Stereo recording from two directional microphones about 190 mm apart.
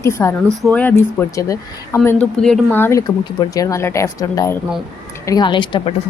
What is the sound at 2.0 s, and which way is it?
A woman's voice, 5° left (ahead or behind).